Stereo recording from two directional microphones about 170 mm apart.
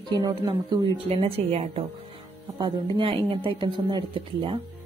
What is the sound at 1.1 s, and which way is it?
Speech, 35° right (ahead or behind).